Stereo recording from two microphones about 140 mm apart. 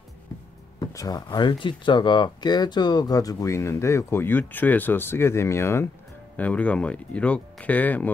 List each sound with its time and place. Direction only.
0.9 s speech: 25° left (ahead or behind)